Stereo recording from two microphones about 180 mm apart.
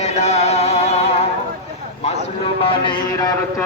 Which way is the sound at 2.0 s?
35° left (ahead or behind).